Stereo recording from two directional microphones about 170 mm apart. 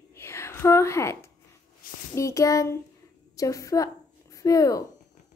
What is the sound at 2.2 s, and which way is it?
A woman's voice, 20° left (ahead or behind).